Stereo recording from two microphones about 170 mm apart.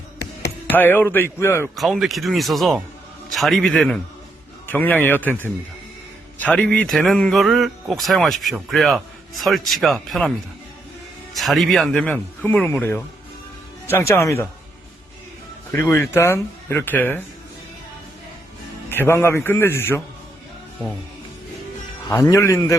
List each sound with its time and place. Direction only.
0.7 s speech: 10° left (ahead or behind)
1.7 s speech: centre (ahead or behind)
11.3 s speech: centre (ahead or behind); by 14.4 s 15° left (ahead or behind)
15.7 s speech: 15° left (ahead or behind)
18.9 s speech: 15° left (ahead or behind)
22.1 s speech: 20° left (ahead or behind)